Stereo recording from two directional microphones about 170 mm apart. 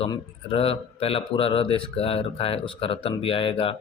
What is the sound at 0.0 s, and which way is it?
Speech, 35° left (ahead or behind).